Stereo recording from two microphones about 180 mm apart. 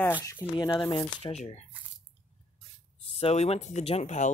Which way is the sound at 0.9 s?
30° left (ahead or behind).